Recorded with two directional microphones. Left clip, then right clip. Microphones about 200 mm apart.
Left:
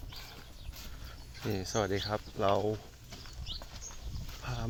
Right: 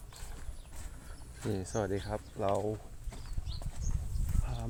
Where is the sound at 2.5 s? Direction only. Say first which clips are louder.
Left 3 dB; 20° left (ahead or behind).